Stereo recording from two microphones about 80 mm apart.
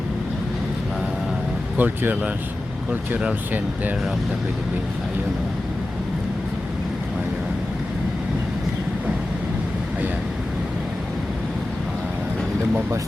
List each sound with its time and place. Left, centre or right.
1.8 s speech: right